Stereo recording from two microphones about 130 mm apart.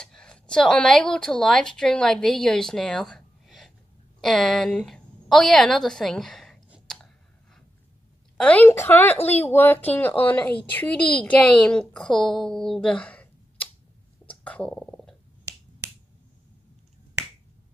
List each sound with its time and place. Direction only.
0.0 s a woman's voice: 5° left (ahead or behind)
8.4 s speech: 10° left (ahead or behind)
12.3 s a sound: 5° left (ahead or behind)
15.8 s finger snapping: 20° right (ahead or behind)